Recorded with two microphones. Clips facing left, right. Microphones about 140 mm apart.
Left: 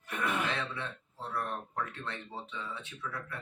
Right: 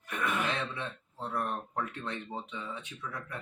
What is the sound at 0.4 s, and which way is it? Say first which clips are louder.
Throat clearing: right 1 dB; 15° right (ahead or behind).